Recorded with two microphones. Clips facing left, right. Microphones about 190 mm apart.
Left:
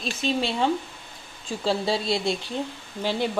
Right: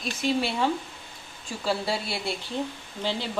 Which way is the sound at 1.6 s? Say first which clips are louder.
Left 3 dB; 25° left (ahead or behind).